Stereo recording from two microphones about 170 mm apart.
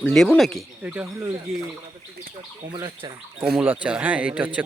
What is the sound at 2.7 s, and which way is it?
Speech, 25° right (ahead or behind).